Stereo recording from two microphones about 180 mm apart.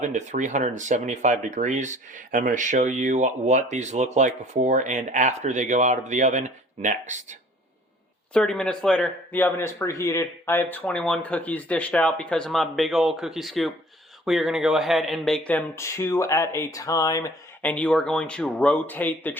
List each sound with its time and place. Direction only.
0.0 s speech: 40° right (ahead or behind)
8.3 s speech: 5° left (ahead or behind)